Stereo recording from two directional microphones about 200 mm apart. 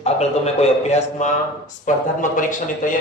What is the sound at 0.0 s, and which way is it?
A man's voice, 30° left (ahead or behind).